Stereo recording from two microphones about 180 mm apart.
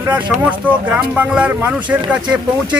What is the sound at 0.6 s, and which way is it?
Speech, 10° right (ahead or behind).